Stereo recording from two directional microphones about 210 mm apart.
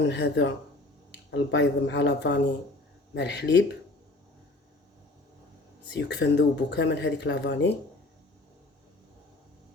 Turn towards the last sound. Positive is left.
turn(degrees=55)  # may be behind; listen again after turning